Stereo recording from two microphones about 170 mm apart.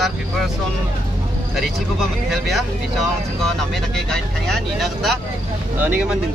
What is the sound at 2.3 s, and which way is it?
Speech, centre (ahead or behind).